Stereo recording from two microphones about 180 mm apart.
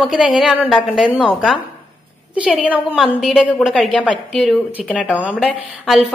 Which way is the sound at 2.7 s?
5° right (ahead or behind).